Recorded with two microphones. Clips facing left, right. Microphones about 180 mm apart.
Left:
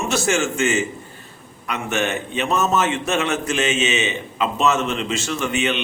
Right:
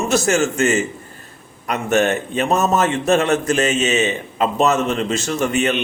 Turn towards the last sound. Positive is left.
turn(degrees=-40)  # may be behind; listen again after turning